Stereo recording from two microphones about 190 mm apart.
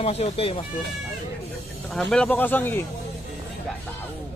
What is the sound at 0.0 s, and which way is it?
Speech, 35° left (ahead or behind).